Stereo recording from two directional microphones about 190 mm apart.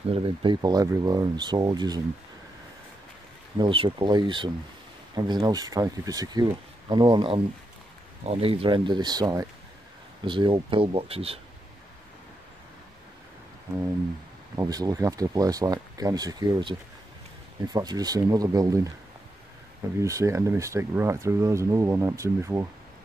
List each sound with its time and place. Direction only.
0.1 s speech: 25° right (ahead or behind)
3.5 s speech: 25° right (ahead or behind)
14.5 s speech: 20° right (ahead or behind)
17.7 s speech: 20° right (ahead or behind)
20.0 s speech: 15° right (ahead or behind)